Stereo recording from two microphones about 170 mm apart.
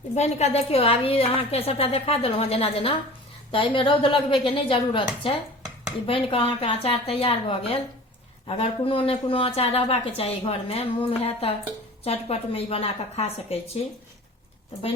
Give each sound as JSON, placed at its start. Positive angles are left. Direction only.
{"t": 0.1, "sound": "a woman's voice", "side_deg": 40}